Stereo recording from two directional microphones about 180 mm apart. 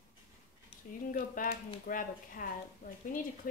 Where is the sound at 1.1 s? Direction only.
55° left (ahead or behind).